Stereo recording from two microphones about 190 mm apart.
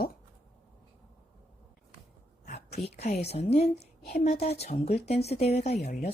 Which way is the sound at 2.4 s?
40° left (ahead or behind).